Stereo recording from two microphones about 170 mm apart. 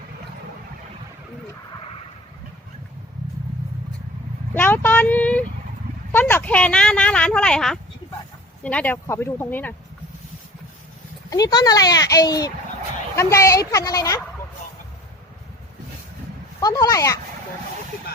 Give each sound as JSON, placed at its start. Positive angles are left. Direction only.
{"t": 4.5, "sound": "speech", "side_deg": 10}
{"t": 11.3, "sound": "speech", "side_deg": 20}
{"t": 16.6, "sound": "speech", "side_deg": 20}